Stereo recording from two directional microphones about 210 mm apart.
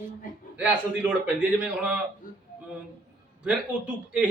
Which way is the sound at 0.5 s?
5° right (ahead or behind).